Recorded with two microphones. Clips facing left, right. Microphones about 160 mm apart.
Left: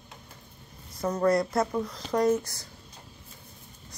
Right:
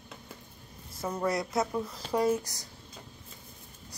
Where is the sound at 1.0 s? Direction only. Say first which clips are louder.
Left 6 dB; 5° right (ahead or behind).